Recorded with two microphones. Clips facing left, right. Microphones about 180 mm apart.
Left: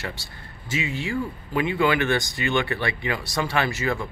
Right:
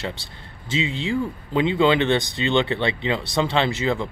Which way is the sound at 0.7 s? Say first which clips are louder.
Right 3 dB; 20° right (ahead or behind).